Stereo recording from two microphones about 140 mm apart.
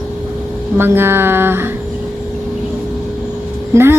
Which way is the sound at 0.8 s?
15° right (ahead or behind).